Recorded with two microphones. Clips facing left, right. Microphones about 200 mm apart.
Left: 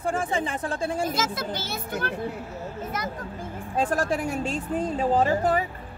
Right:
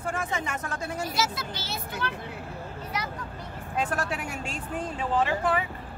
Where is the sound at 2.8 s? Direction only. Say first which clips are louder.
Left 2 dB; 50° left (ahead or behind).